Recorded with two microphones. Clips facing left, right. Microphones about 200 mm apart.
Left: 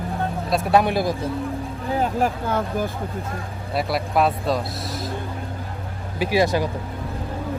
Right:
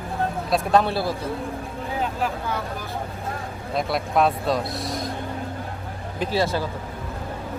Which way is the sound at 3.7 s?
5° left (ahead or behind).